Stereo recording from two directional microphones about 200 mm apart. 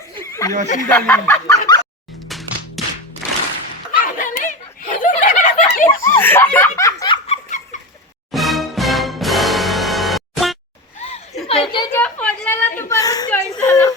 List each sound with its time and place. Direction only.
0.8 s speech: 15° left (ahead or behind)
2.3 s music: centre (ahead or behind)
3.9 s snicker: 45° left (ahead or behind)
6.0 s speech: 10° left (ahead or behind)
6.7 s snicker: 20° left (ahead or behind)
8.3 s music: centre (ahead or behind)
11.4 s a sound: 30° left (ahead or behind)
11.9 s a sound: 10° left (ahead or behind)